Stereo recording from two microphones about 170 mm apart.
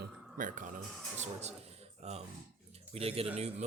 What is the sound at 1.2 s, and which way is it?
Speech, 40° right (ahead or behind).